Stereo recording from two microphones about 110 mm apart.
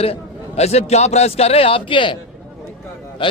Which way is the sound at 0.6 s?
75° left (ahead or behind).